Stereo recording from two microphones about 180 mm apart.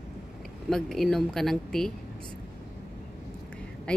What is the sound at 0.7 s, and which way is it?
Speech, centre (ahead or behind).